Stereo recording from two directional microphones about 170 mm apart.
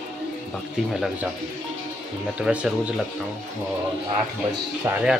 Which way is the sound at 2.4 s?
5° right (ahead or behind).